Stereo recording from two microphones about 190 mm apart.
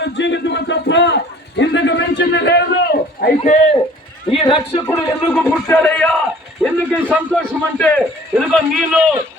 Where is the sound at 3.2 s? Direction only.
45° left (ahead or behind).